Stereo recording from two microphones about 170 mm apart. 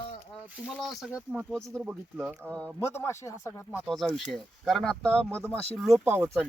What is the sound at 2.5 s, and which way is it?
Speech, 5° left (ahead or behind).